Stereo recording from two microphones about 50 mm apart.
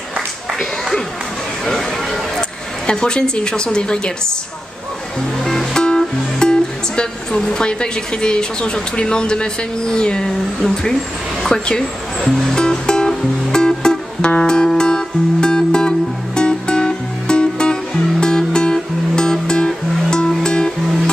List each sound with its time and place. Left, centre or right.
0.6 s a sound: centre
2.9 s a woman's voice: centre
5.4 s a woman's voice: centre
12.2 s music: centre
12.5 s music: centre